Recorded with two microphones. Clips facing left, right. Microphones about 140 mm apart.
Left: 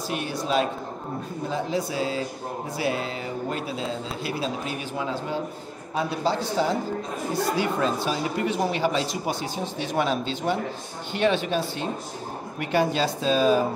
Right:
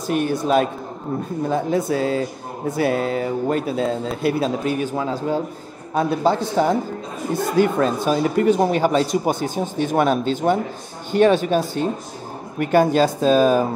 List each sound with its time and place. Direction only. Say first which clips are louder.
0.1 s speech: right 8 dB; 50° right (ahead or behind)